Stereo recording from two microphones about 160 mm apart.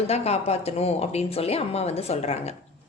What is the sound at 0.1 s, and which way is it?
A woman's voice, 40° left (ahead or behind).